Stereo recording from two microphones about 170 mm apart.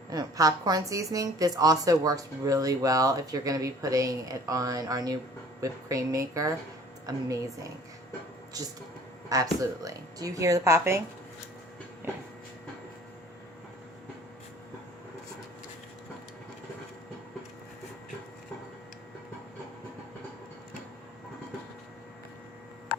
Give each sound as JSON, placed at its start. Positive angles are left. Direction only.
{"t": 0.1, "sound": "a woman's voice", "side_deg": -20}
{"t": 9.3, "sound": "a woman's voice", "side_deg": -20}